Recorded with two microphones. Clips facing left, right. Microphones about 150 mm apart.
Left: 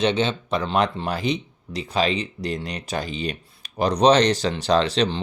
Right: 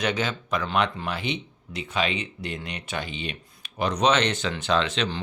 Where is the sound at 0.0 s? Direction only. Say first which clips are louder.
Left 5 dB; 30° left (ahead or behind).